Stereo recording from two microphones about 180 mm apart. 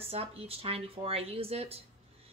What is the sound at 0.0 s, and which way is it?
Speech, 35° right (ahead or behind).